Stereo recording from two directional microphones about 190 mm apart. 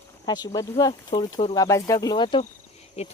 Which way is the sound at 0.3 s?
20° left (ahead or behind).